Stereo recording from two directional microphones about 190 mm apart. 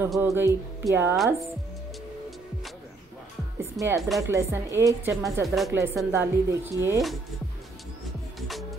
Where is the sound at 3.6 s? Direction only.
15° right (ahead or behind).